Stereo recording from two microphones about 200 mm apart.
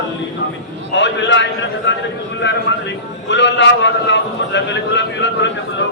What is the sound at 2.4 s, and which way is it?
A man's voice, 65° left (ahead or behind).